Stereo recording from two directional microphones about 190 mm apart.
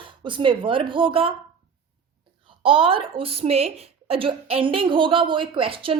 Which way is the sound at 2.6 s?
25° right (ahead or behind).